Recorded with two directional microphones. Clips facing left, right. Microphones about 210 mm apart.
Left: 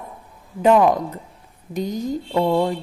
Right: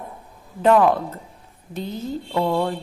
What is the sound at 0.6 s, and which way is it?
Speech, 10° left (ahead or behind).